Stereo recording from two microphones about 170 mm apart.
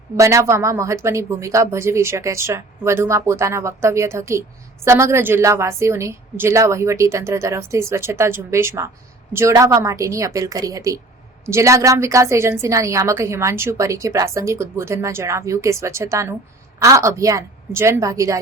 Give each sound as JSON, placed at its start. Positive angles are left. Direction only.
{"t": 0.2, "sound": "a woman's voice", "side_deg": -15}